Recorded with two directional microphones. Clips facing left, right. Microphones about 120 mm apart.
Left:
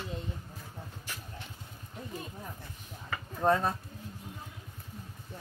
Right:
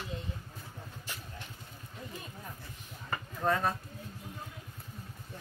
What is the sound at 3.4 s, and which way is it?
Speech, 30° left (ahead or behind).